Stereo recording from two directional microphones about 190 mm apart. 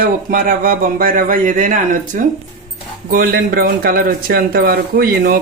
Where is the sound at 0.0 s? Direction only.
50° right (ahead or behind).